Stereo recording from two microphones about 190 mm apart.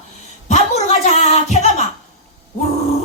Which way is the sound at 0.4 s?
35° left (ahead or behind).